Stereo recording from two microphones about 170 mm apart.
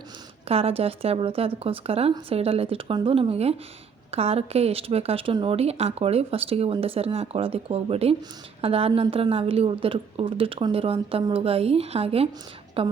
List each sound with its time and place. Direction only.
0.4 s speech: 35° right (ahead or behind)